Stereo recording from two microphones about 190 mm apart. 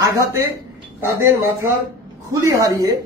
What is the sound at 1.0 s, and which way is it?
Speech, 15° right (ahead or behind).